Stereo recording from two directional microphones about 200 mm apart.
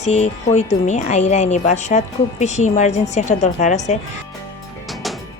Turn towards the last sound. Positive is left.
turn(degrees=35)  # may be behind; listen again after turning